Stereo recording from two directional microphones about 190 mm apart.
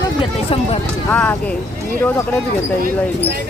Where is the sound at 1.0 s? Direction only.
10° left (ahead or behind).